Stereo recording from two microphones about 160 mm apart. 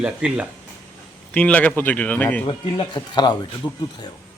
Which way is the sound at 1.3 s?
10° left (ahead or behind).